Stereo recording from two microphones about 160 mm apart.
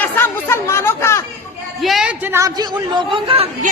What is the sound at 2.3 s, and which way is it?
A man's voice, 25° right (ahead or behind).